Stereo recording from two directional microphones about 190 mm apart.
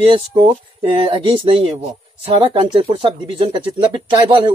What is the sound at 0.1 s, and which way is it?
Speech, 25° right (ahead or behind).